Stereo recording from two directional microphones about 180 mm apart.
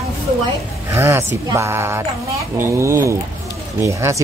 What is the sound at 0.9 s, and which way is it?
Speech, 15° right (ahead or behind).